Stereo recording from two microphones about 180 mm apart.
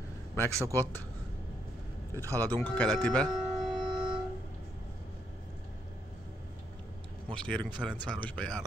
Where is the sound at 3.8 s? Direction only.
30° right (ahead or behind).